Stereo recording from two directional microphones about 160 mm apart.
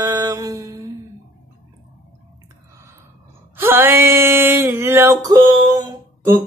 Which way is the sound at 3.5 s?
15° right (ahead or behind).